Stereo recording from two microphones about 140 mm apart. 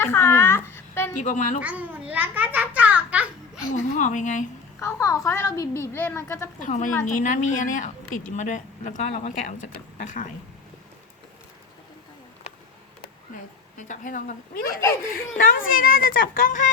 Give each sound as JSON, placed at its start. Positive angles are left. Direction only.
{"t": 0.0, "sound": "a sound", "side_deg": 15}
{"t": 1.2, "sound": "a woman's voice", "side_deg": 60}
{"t": 1.6, "sound": "a child's voice", "side_deg": -10}
{"t": 3.7, "sound": "a woman's voice", "side_deg": 65}
{"t": 4.8, "sound": "a woman's voice", "side_deg": 20}
{"t": 6.6, "sound": "a woman's voice", "side_deg": 65}
{"t": 13.3, "sound": "a woman's voice", "side_deg": 70}